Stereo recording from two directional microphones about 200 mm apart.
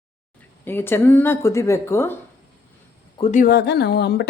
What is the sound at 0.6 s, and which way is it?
Speech, 10° left (ahead or behind).